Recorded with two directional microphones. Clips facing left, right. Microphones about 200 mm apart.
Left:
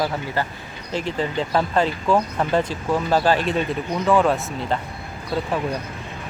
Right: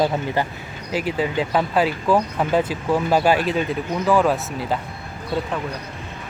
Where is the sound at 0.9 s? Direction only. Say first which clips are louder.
Right 2 dB; 10° right (ahead or behind).